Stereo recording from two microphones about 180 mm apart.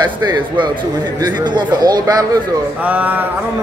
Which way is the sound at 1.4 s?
25° right (ahead or behind).